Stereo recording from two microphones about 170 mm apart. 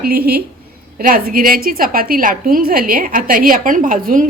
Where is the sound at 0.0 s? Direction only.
65° right (ahead or behind).